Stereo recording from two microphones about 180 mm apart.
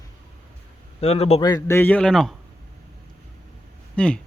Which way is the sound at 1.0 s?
35° left (ahead or behind).